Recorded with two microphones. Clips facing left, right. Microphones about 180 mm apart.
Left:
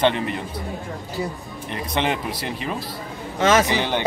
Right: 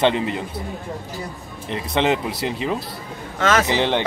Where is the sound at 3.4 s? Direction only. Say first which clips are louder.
Left 2 dB; 20° left (ahead or behind).